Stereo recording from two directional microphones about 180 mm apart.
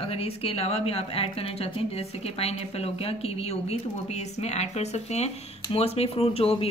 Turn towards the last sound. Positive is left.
turn(degrees=35)  # may be behind; listen again after turning